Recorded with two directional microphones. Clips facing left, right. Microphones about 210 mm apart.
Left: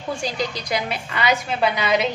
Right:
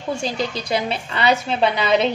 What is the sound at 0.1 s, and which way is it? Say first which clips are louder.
A woman's voice: right 2 dB; 25° right (ahead or behind).